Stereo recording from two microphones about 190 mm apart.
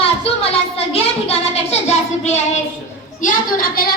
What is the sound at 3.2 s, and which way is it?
Speech, 50° left (ahead or behind).